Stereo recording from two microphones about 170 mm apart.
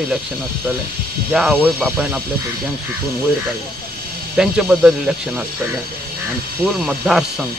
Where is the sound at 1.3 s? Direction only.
5° right (ahead or behind).